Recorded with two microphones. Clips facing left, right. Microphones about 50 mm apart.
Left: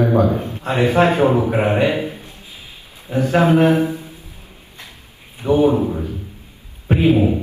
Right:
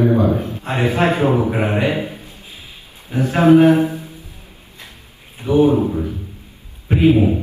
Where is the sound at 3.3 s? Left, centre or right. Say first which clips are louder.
Right 3 dB; left.